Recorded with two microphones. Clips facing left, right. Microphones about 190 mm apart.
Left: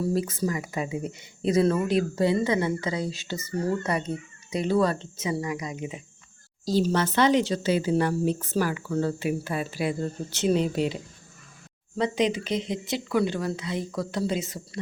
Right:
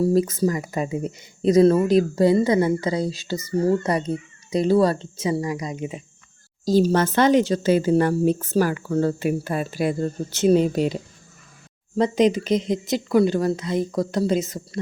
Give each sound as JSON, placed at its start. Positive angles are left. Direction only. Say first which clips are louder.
{"t": 0.1, "sound": "speech", "louder": "right 7 dB", "side_deg": -40}
{"t": 6.7, "sound": "speech", "louder": "right 6 dB", "side_deg": -45}
{"t": 11.9, "sound": "speech", "louder": "right 6 dB", "side_deg": -45}